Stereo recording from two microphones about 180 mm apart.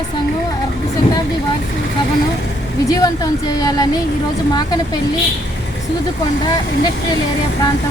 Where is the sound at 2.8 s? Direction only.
20° left (ahead or behind).